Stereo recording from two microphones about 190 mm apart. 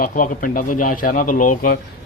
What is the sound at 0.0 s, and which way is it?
Speech, 45° left (ahead or behind).